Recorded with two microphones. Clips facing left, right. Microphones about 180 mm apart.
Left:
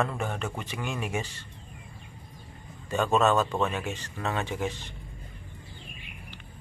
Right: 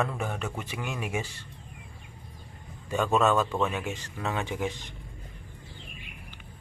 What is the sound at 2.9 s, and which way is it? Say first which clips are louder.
A man's voice: left 1 dB; 10° right (ahead or behind).